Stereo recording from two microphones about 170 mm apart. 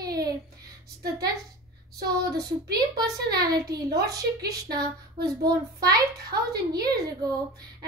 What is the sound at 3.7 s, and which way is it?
Speech, 20° right (ahead or behind).